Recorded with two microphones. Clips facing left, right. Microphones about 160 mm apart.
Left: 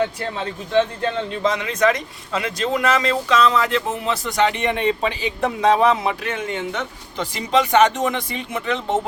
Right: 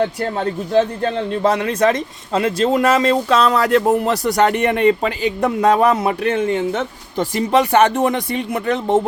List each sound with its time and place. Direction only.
0.2 s a man's voice: 40° right (ahead or behind)